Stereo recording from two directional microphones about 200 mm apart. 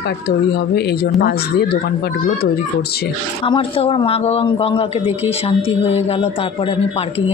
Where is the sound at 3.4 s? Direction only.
25° left (ahead or behind).